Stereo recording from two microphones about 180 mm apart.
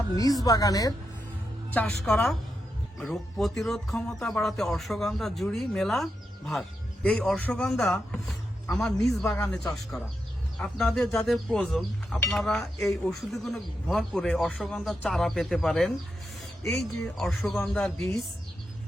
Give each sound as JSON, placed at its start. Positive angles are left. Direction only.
{"t": 0.4, "sound": "speech", "side_deg": 20}
{"t": 1.7, "sound": "speech", "side_deg": 5}